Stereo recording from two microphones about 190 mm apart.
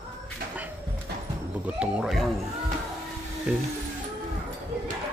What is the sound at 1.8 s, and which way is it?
Speech, 5° right (ahead or behind).